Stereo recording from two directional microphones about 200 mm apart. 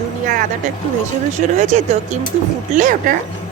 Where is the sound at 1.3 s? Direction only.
35° right (ahead or behind).